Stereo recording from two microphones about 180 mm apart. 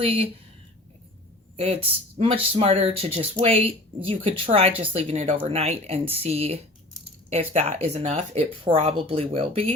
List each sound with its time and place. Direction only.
0.0 s speech: 30° right (ahead or behind)
1.5 s speech: 35° right (ahead or behind)